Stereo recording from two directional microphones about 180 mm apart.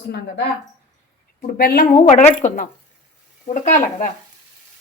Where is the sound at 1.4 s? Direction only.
55° left (ahead or behind).